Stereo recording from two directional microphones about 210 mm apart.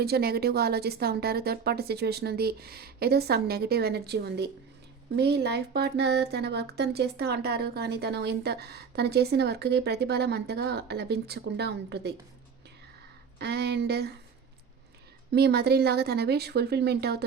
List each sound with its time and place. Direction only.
0.0 s speech: 50° right (ahead or behind)
13.4 s speech: 50° right (ahead or behind)
15.3 s speech: 50° right (ahead or behind)